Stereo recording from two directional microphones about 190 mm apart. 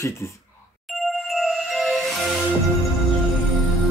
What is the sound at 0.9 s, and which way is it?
Music, centre (ahead or behind).